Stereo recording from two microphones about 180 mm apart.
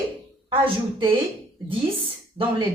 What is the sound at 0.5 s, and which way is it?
Speech, 30° right (ahead or behind).